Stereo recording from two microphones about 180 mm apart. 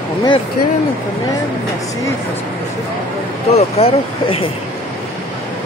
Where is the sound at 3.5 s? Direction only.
35° left (ahead or behind).